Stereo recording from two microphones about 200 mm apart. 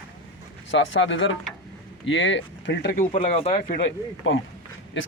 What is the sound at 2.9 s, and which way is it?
Speech, 40° left (ahead or behind).